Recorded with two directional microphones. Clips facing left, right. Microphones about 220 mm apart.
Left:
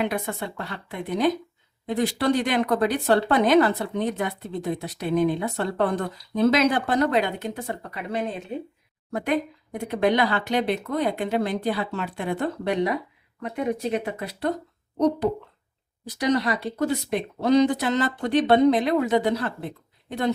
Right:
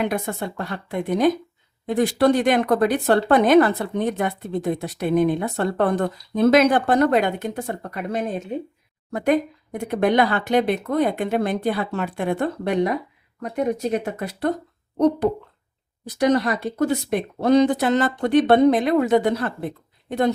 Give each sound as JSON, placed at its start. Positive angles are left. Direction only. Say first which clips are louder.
{"t": 0.0, "sound": "speech", "louder": "right 3 dB", "side_deg": -45}
{"t": 16.0, "sound": "speech", "louder": "right 4 dB", "side_deg": -50}